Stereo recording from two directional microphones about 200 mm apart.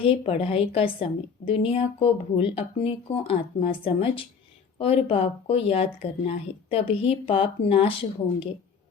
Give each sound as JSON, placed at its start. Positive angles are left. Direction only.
{"t": 0.0, "sound": "speech", "side_deg": 25}